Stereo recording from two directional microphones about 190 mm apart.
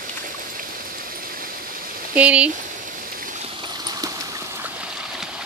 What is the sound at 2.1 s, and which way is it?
Speech, 5° right (ahead or behind).